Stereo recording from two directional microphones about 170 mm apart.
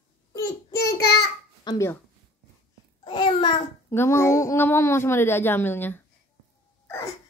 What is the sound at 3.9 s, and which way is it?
A woman's voice, 15° left (ahead or behind).